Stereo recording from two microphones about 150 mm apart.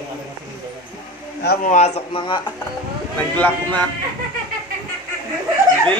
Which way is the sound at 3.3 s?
10° left (ahead or behind).